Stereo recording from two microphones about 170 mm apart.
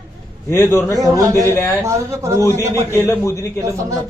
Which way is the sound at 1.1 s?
20° right (ahead or behind).